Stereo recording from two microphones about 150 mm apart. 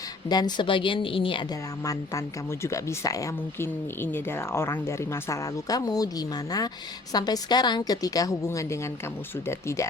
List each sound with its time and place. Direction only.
0.3 s a woman's voice: 30° left (ahead or behind)
1.8 s speech: 20° left (ahead or behind)